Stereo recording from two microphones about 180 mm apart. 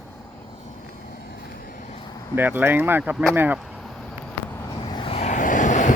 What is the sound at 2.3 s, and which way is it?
Speech, 10° right (ahead or behind).